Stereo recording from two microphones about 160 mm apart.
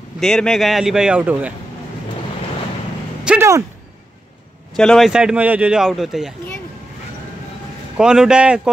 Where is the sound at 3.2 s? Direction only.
5° right (ahead or behind).